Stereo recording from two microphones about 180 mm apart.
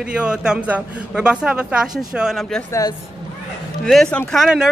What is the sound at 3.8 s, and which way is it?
Speech, 5° left (ahead or behind).